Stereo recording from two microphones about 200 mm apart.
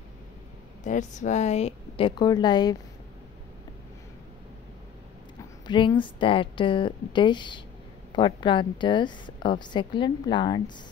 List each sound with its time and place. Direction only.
0.8 s a woman's voice: 40° left (ahead or behind); by 2.8 s 20° left (ahead or behind)
5.7 s a woman's voice: 25° left (ahead or behind)